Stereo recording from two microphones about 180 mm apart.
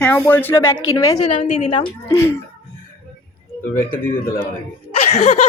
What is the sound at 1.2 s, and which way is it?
Speech, 30° left (ahead or behind).